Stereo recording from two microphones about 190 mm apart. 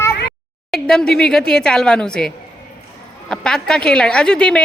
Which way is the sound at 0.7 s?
5° left (ahead or behind).